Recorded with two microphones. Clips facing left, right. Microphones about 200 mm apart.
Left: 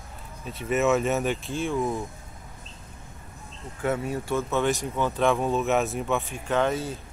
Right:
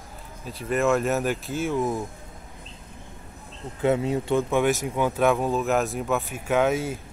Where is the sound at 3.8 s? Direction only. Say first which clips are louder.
Right 5 dB; 20° right (ahead or behind).